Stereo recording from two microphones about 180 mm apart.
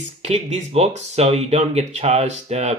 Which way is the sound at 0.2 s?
35° right (ahead or behind).